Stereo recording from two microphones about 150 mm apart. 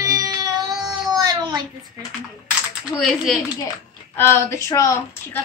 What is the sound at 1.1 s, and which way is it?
Baby cry, 30° right (ahead or behind).